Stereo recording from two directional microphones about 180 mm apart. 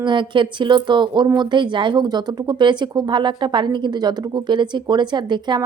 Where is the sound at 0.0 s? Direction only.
25° right (ahead or behind).